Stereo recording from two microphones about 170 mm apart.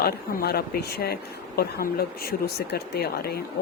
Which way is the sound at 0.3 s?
65° left (ahead or behind).